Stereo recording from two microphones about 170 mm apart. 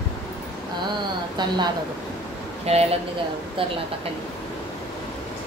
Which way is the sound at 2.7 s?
35° right (ahead or behind).